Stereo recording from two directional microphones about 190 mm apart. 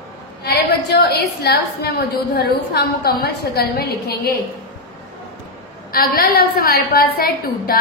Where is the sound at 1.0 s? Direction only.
60° left (ahead or behind).